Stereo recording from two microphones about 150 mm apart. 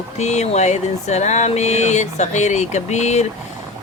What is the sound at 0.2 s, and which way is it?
Speech, 50° left (ahead or behind).